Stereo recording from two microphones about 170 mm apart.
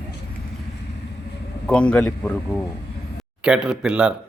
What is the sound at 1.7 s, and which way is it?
Speech, 5° left (ahead or behind).